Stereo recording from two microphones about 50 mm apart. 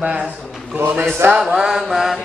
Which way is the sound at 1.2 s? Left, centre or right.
Right.